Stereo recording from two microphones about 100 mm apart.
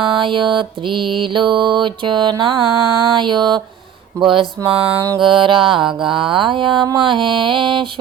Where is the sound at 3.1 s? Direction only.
50° right (ahead or behind).